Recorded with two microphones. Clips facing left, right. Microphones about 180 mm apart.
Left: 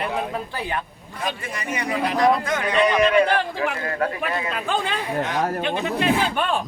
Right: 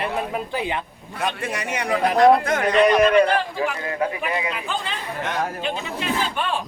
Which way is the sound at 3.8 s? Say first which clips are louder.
Even; 15° right (ahead or behind).